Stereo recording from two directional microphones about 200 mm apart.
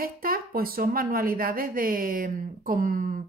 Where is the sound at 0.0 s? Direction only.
45° right (ahead or behind).